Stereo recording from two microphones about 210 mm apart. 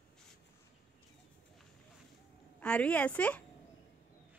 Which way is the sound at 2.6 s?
5° left (ahead or behind).